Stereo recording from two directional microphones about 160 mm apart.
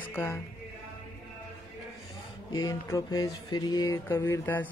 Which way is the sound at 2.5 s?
20° left (ahead or behind).